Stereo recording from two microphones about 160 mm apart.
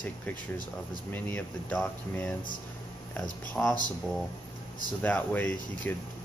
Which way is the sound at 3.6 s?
5° left (ahead or behind).